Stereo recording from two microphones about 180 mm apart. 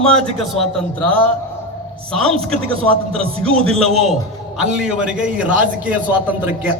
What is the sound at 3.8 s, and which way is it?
Speech, 35° right (ahead or behind).